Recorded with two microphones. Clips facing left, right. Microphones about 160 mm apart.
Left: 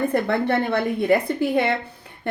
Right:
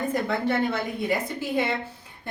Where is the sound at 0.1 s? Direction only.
60° left (ahead or behind).